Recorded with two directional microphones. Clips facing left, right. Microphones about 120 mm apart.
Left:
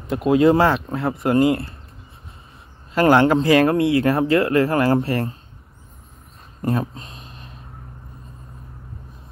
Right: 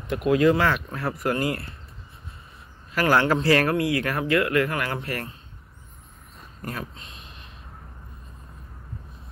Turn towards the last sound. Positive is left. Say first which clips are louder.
# left 5 dB
turn(degrees=40)  # may be behind; listen again after turning